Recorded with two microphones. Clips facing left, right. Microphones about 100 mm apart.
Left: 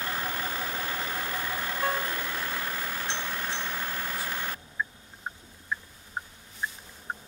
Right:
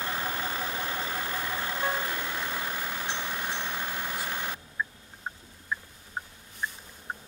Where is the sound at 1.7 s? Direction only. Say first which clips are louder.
Left 2 dB; 20° right (ahead or behind).